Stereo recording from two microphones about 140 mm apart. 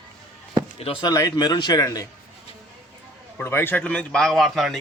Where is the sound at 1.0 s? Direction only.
30° left (ahead or behind).